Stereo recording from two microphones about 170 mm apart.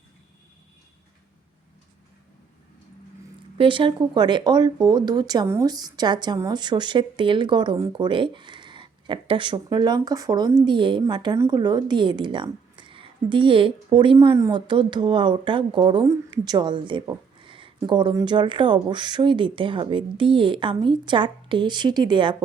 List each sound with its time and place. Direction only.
3.6 s speech: 30° right (ahead or behind)
14.2 s speech: 20° right (ahead or behind)